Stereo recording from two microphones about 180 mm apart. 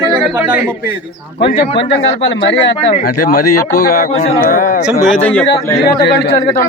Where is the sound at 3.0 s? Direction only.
60° left (ahead or behind).